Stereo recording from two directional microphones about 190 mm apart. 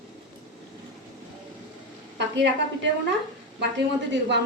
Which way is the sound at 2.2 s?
70° right (ahead or behind).